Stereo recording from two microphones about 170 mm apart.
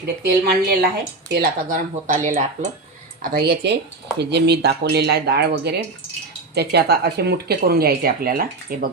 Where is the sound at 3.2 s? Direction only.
65° right (ahead or behind).